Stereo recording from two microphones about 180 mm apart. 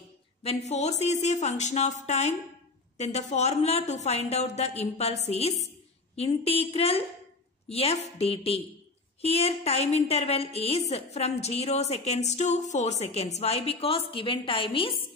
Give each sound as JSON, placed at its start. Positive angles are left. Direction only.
{"t": 0.4, "sound": "a woman's voice", "side_deg": 35}